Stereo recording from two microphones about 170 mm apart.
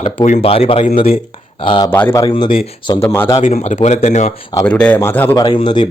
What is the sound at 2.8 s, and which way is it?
Speech, 20° left (ahead or behind).